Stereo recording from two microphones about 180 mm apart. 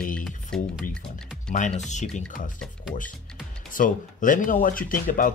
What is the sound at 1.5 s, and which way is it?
Speech, 45° left (ahead or behind).